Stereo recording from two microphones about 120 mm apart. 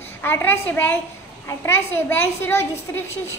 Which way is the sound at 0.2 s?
15° left (ahead or behind).